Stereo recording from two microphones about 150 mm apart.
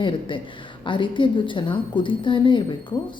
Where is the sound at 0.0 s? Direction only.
35° left (ahead or behind).